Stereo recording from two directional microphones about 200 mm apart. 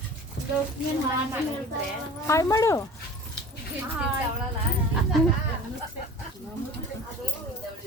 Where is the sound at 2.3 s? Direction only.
15° left (ahead or behind).